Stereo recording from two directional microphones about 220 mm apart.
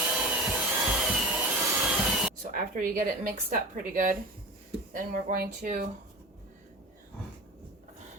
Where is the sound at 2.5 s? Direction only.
40° right (ahead or behind).